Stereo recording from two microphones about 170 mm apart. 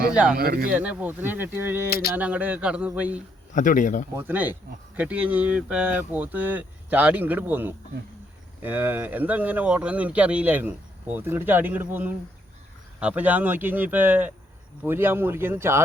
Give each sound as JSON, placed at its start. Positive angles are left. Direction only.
{"t": 0.1, "sound": "speech", "side_deg": -5}
{"t": 0.3, "sound": "speech", "side_deg": -60}
{"t": 0.7, "sound": "speech", "side_deg": -5}
{"t": 1.9, "sound": "speech", "side_deg": 65}
{"t": 2.1, "sound": "speech", "side_deg": -10}
{"t": 3.5, "sound": "speech", "side_deg": 50}
{"t": 4.2, "sound": "speech", "side_deg": -10}